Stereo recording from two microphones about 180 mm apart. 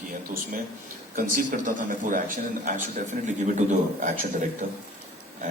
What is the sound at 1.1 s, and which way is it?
A man's voice, 50° right (ahead or behind).